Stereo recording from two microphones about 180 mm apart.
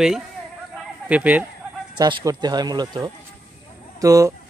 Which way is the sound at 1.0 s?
10° right (ahead or behind).